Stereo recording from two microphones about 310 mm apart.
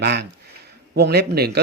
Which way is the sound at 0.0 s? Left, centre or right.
Right.